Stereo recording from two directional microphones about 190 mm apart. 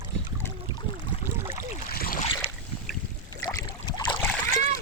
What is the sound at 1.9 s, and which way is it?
Boat, 50° left (ahead or behind).